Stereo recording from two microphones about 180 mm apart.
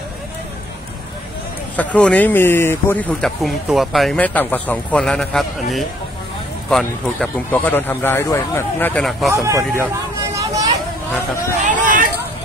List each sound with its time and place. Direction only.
1.8 s speech: 10° left (ahead or behind)
6.7 s speech: 5° left (ahead or behind)
9.3 s speech: 15° right (ahead or behind)
10.3 s vehicle: 20° right (ahead or behind)
11.6 s speech: 45° right (ahead or behind)